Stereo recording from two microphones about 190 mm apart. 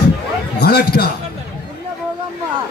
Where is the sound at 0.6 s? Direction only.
55° left (ahead or behind).